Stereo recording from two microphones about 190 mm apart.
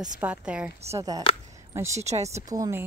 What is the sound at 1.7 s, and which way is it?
Speech, 15° right (ahead or behind).